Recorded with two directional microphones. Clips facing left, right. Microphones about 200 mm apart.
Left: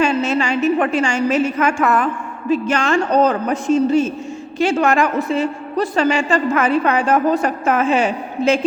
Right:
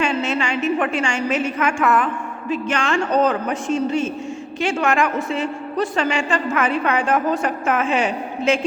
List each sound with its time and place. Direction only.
0.0 s a woman's voice: 40° left (ahead or behind)